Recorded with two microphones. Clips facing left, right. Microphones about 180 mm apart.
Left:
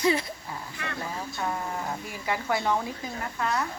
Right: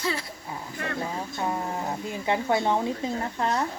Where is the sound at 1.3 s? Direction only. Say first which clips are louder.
Right 2 dB; 25° right (ahead or behind).